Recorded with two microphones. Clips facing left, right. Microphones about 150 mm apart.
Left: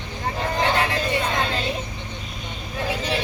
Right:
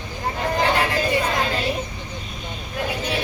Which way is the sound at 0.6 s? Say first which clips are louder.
Right 1 dB; centre (ahead or behind).